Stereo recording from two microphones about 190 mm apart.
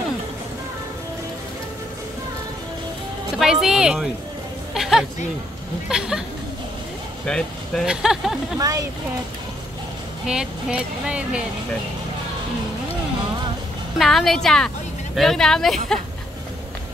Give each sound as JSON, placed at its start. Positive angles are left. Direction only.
{"t": 3.3, "sound": "speech", "side_deg": -5}
{"t": 7.2, "sound": "speech", "side_deg": 5}
{"t": 8.5, "sound": "speech", "side_deg": -20}
{"t": 10.2, "sound": "speech", "side_deg": -5}
{"t": 13.9, "sound": "speech", "side_deg": 0}